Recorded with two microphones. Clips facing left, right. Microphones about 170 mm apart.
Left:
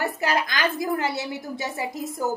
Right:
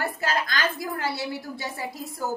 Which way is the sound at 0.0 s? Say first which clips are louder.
Left 3 dB; 20° left (ahead or behind).